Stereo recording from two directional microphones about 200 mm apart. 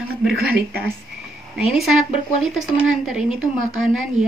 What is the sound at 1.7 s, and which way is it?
Speech, centre (ahead or behind).